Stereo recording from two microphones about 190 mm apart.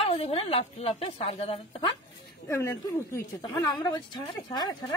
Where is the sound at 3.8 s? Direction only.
20° left (ahead or behind).